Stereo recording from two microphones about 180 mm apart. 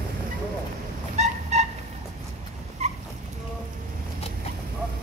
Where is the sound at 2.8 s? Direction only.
35° right (ahead or behind).